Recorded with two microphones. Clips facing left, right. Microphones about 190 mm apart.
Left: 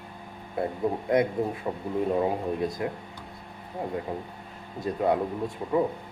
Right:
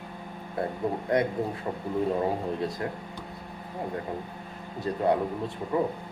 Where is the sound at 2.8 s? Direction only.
20° left (ahead or behind).